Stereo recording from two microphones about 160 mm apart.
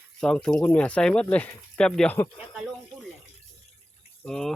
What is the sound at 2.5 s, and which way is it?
Speech, centre (ahead or behind).